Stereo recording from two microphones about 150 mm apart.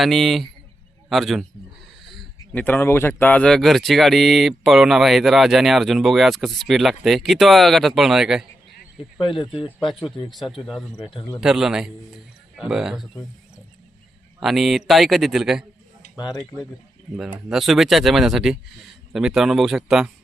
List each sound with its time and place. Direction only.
0.0 s speech: centre (ahead or behind)
9.4 s speech: 35° left (ahead or behind)
9.8 s speech: centre (ahead or behind)
11.0 s speech: 35° left (ahead or behind)
11.3 s speech: 5° right (ahead or behind)
14.4 s speech: centre (ahead or behind)
16.1 s speech: 25° left (ahead or behind)
17.2 s speech: centre (ahead or behind)